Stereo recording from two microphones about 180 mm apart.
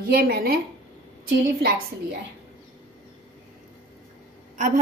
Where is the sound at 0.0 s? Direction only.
55° right (ahead or behind).